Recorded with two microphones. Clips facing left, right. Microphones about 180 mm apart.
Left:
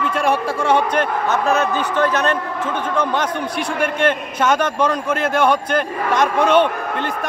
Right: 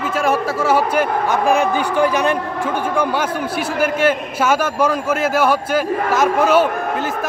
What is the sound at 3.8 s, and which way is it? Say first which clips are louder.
A man's voice: right 2 dB; 5° right (ahead or behind).